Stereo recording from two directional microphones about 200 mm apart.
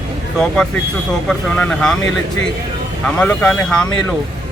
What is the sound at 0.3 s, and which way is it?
Speech, 5° left (ahead or behind).